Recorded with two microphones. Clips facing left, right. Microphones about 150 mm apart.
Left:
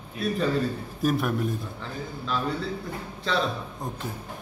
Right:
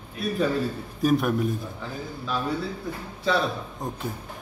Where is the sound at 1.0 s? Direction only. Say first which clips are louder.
Right 3 dB; centre (ahead or behind).